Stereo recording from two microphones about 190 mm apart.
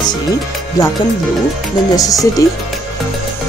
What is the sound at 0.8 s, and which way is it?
Speech, 20° left (ahead or behind).